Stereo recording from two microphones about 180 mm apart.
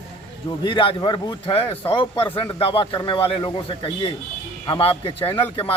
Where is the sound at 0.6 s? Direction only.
30° left (ahead or behind).